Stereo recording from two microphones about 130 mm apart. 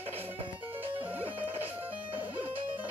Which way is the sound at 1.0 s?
45° right (ahead or behind).